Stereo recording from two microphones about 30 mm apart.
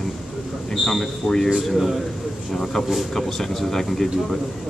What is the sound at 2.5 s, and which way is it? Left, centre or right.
A man's voice, centre.